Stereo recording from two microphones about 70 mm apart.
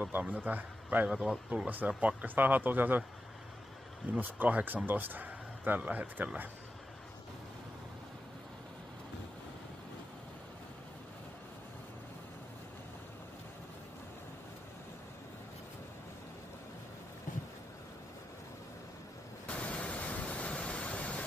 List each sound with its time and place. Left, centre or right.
0.1 s a man's voice: right
1.0 s speech: centre
1.7 s speech: right
4.2 s speech: right
19.4 s a sound: centre